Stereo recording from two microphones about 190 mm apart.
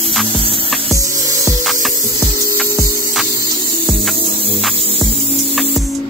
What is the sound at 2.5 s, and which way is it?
Music, 15° right (ahead or behind).